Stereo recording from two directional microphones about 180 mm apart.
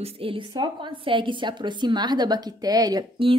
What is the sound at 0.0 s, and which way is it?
A woman's voice, 30° right (ahead or behind).